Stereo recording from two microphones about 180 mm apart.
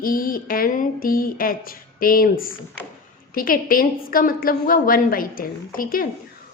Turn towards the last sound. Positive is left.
turn(degrees=50)  # may be behind; listen again after turning